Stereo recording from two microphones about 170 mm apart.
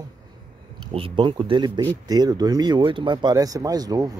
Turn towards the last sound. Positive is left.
turn(degrees=-20)  # may be behind; listen again after turning